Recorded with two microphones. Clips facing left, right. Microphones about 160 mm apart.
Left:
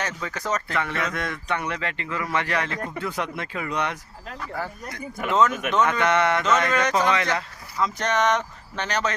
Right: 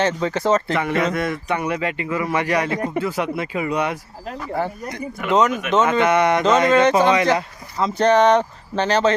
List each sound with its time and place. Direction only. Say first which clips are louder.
0.0 s speech: right 10 dB; 30° right (ahead or behind)
0.8 s speech: right 7 dB; 15° right (ahead or behind)
4.5 s speech: right 8 dB; 20° right (ahead or behind)
6.7 s speech: right 7 dB; 25° right (ahead or behind)